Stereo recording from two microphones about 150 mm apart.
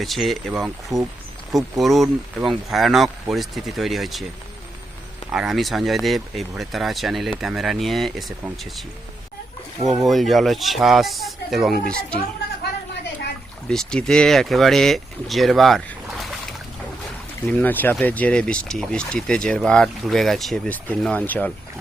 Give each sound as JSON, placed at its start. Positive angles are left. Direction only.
{"t": 0.0, "sound": "speech", "side_deg": 0}
{"t": 0.9, "sound": "speech", "side_deg": -20}
{"t": 1.8, "sound": "speech", "side_deg": 0}
{"t": 5.3, "sound": "speech", "side_deg": -5}
{"t": 10.0, "sound": "speech", "side_deg": 0}
{"t": 13.7, "sound": "speech", "side_deg": 5}
{"t": 17.4, "sound": "speech", "side_deg": 10}